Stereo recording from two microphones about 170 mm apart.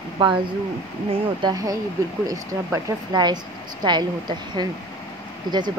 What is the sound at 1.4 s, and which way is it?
Speech, 20° right (ahead or behind).